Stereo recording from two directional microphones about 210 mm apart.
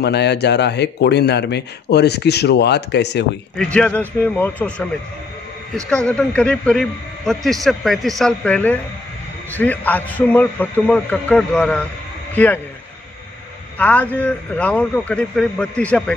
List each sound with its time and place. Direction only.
0.0 s speech: 55° left (ahead or behind)
3.5 s a man's voice: 5° left (ahead or behind)
5.9 s a man's voice: 5° left (ahead or behind)
13.7 s a man's voice: 5° left (ahead or behind)